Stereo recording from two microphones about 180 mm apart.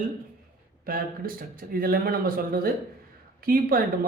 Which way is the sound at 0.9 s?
50° right (ahead or behind).